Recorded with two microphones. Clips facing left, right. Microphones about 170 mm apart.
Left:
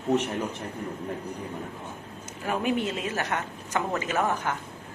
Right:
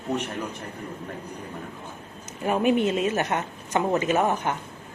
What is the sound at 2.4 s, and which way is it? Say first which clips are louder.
A woman's voice: right 5 dB; 20° right (ahead or behind).